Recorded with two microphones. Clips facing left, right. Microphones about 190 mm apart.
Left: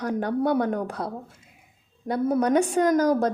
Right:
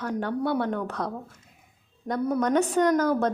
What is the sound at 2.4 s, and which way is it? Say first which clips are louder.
Speech: even; 10° left (ahead or behind).